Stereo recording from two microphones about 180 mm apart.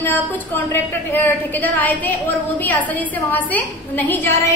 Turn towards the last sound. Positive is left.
turn(degrees=10)  # may be behind; listen again after turning